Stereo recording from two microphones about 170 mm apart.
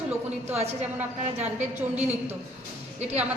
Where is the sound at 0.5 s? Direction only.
40° right (ahead or behind).